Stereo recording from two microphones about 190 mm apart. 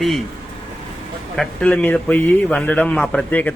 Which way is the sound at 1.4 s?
5° left (ahead or behind).